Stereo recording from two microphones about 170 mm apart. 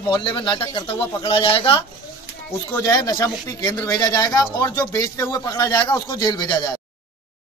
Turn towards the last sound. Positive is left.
turn(degrees=25)  # may be behind; listen again after turning